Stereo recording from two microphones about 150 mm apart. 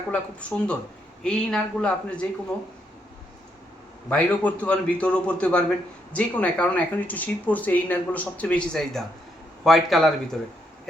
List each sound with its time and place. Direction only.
0.1 s speech: 5° left (ahead or behind)
4.1 s speech: 10° left (ahead or behind)